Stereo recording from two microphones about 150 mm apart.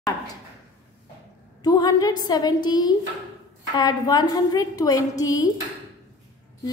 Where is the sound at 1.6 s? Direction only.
25° left (ahead or behind).